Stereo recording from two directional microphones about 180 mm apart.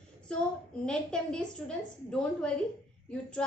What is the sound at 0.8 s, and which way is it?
A woman's voice, 5° left (ahead or behind).